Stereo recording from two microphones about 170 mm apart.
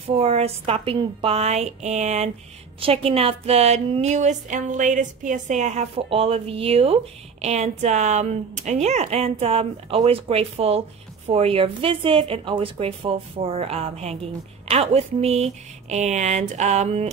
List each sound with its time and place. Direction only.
0.0 s a woman's voice: 35° right (ahead or behind)